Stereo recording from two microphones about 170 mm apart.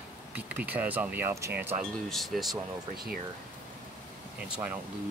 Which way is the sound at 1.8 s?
Centre (ahead or behind).